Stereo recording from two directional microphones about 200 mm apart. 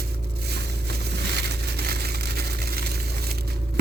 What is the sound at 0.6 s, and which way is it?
Crushing, 55° right (ahead or behind).